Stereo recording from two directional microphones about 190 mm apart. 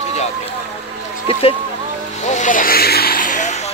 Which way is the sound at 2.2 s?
40° left (ahead or behind).